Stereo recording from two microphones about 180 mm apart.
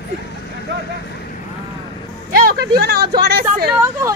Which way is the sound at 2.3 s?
55° right (ahead or behind).